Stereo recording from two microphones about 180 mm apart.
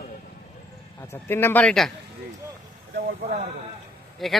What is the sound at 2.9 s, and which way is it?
Speech, 55° right (ahead or behind).